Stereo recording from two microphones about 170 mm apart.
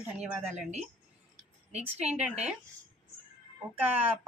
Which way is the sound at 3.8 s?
10° right (ahead or behind).